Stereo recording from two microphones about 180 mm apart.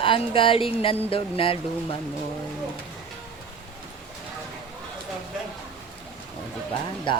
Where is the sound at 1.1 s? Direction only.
30° left (ahead or behind).